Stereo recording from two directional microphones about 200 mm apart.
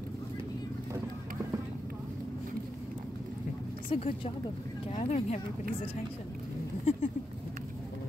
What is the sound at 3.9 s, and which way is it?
Speech, 30° left (ahead or behind).